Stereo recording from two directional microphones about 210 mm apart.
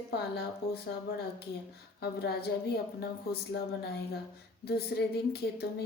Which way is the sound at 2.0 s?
50° left (ahead or behind).